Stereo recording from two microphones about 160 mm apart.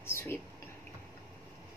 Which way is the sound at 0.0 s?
15° left (ahead or behind).